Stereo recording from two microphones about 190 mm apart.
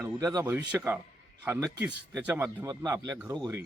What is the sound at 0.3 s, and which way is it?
A man's voice, 10° right (ahead or behind).